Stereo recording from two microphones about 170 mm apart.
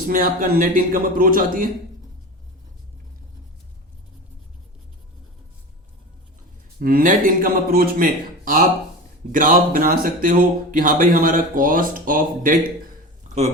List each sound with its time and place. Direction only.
0.1 s a man's voice: 55° right (ahead or behind)
6.7 s a man's voice: 60° right (ahead or behind)
13.2 s a sound: 40° right (ahead or behind)